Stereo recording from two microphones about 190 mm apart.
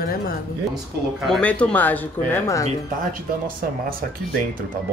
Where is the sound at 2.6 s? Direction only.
45° right (ahead or behind).